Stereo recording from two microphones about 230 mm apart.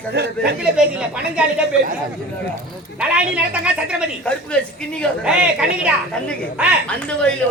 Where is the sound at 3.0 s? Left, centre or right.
Centre.